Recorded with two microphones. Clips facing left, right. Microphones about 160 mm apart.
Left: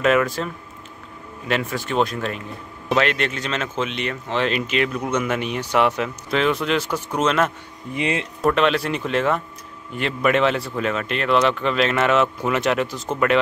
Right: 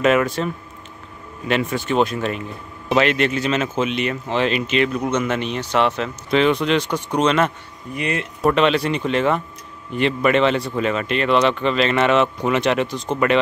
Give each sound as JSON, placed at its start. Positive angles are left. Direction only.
{"t": 0.0, "sound": "speech", "side_deg": 0}
{"t": 1.5, "sound": "speech", "side_deg": 0}
{"t": 7.9, "sound": "speech", "side_deg": 25}
{"t": 8.4, "sound": "speech", "side_deg": 0}